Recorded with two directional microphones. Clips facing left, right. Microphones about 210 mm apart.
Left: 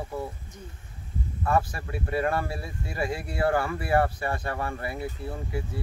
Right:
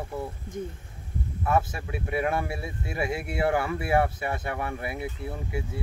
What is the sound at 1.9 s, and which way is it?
Speech, 20° right (ahead or behind).